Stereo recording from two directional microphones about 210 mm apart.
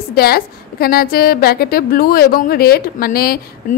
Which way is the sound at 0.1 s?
45° left (ahead or behind).